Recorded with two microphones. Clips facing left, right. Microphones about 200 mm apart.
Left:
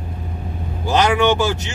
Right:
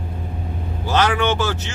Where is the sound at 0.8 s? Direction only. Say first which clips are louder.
Left 3 dB; 15° left (ahead or behind).